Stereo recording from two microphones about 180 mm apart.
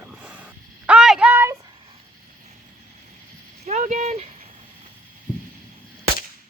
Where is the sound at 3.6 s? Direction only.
40° right (ahead or behind).